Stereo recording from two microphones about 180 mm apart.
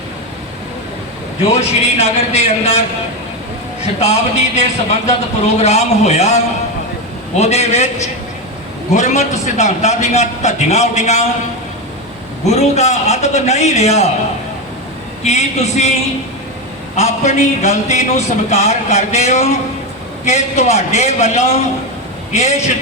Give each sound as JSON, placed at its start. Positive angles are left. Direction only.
{"t": 1.5, "sound": "a man's voice", "side_deg": 35}
{"t": 4.0, "sound": "a man's voice", "side_deg": 35}
{"t": 8.9, "sound": "a man's voice", "side_deg": 40}
{"t": 12.5, "sound": "a man's voice", "side_deg": 35}
{"t": 15.2, "sound": "a man's voice", "side_deg": 40}
{"t": 16.9, "sound": "a man's voice", "side_deg": 40}